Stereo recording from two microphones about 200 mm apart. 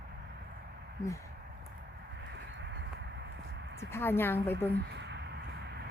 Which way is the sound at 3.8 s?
10° left (ahead or behind).